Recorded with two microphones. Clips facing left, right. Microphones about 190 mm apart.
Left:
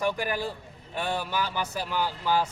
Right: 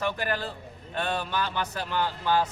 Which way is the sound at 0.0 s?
10° left (ahead or behind).